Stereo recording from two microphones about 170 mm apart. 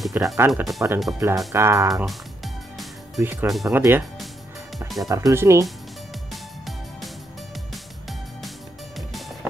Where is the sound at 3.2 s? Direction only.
10° right (ahead or behind).